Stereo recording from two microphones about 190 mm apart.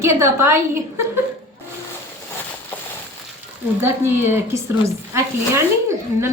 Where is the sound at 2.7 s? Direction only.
10° left (ahead or behind).